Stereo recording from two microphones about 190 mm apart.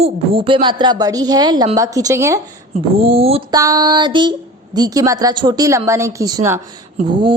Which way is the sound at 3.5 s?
20° right (ahead or behind).